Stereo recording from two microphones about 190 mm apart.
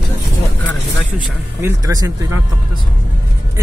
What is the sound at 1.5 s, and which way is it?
Speech, 15° right (ahead or behind).